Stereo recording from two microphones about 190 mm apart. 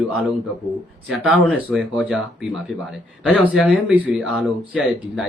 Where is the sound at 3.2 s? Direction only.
5° left (ahead or behind).